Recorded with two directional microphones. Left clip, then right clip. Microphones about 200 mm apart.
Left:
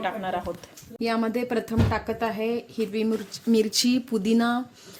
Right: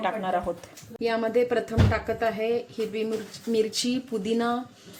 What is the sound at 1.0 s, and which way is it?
Speech, 50° left (ahead or behind).